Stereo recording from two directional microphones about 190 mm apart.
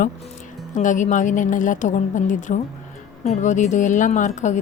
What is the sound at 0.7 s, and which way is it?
A woman's voice, 40° left (ahead or behind).